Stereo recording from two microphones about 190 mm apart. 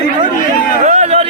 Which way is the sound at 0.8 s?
35° right (ahead or behind).